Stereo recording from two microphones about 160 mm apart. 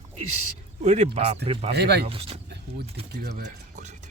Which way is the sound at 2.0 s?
35° right (ahead or behind).